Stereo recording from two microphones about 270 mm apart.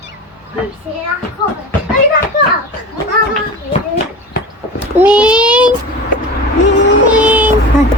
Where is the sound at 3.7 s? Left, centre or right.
Left.